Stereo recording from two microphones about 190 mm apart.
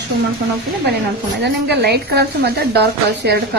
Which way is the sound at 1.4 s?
60° right (ahead or behind).